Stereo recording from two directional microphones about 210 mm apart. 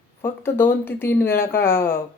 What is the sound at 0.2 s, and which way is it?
Speech, 10° left (ahead or behind).